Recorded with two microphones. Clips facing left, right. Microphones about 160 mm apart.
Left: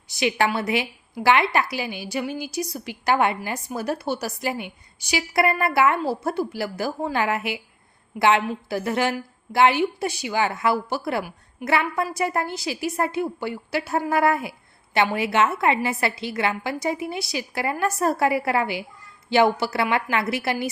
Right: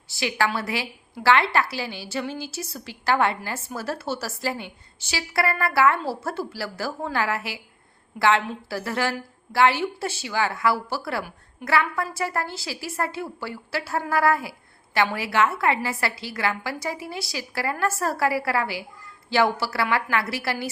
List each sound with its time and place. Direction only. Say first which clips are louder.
0.1 s a woman's voice: left 3 dB; 20° left (ahead or behind)